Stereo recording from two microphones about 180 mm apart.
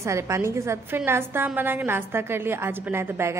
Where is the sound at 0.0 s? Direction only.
15° right (ahead or behind).